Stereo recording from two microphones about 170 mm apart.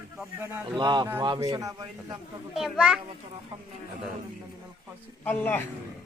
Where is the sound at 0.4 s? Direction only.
10° right (ahead or behind).